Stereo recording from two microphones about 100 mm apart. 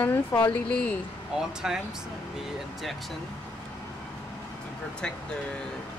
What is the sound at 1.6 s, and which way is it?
Speech, 5° right (ahead or behind).